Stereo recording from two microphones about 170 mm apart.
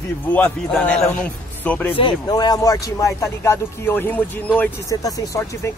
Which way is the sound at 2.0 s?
25° left (ahead or behind).